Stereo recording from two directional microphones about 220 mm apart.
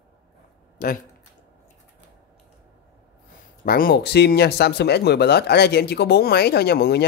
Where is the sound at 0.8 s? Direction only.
40° left (ahead or behind).